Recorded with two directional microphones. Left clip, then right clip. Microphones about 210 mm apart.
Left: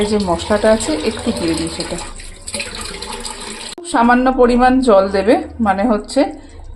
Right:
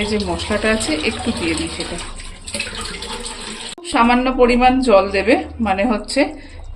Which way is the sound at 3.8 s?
20° left (ahead or behind).